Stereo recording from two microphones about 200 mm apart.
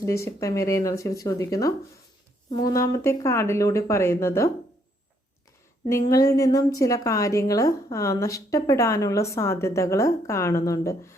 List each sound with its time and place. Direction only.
0.0 s a woman's voice: 15° left (ahead or behind)
5.9 s a woman's voice: 15° left (ahead or behind)